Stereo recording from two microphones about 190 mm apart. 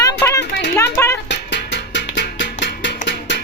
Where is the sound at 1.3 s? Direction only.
65° left (ahead or behind).